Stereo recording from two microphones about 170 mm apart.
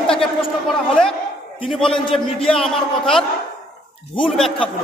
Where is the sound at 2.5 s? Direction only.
5° left (ahead or behind).